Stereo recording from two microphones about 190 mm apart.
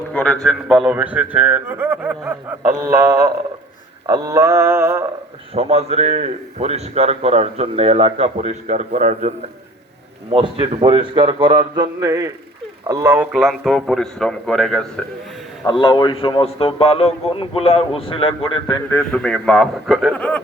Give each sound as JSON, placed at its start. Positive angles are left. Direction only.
{"t": 0.1, "sound": "a man's voice", "side_deg": 5}
{"t": 5.5, "sound": "speech", "side_deg": -35}
{"t": 10.3, "sound": "a man's voice", "side_deg": -30}
{"t": 15.6, "sound": "a man's voice", "side_deg": 25}
{"t": 18.9, "sound": "a man's voice", "side_deg": 10}